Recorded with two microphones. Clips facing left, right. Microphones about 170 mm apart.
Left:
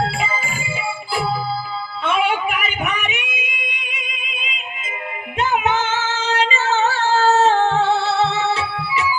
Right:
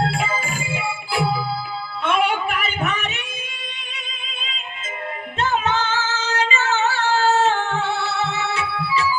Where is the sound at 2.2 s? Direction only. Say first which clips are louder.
Left 1 dB; 10° left (ahead or behind).